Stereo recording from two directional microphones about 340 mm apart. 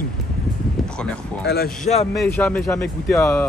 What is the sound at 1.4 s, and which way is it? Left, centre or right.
Speech, left.